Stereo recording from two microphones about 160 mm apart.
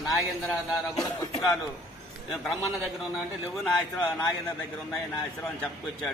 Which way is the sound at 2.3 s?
Centre (ahead or behind).